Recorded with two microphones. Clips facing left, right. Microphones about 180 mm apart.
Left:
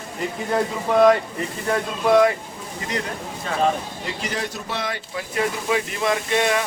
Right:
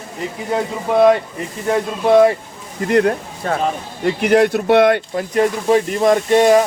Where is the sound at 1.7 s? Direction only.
25° right (ahead or behind).